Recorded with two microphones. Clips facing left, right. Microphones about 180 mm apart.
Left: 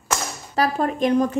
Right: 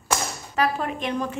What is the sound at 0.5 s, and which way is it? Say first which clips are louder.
Speech: left 3 dB; 40° left (ahead or behind).